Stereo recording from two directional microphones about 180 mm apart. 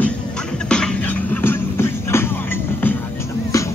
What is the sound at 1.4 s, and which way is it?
Music, 15° left (ahead or behind).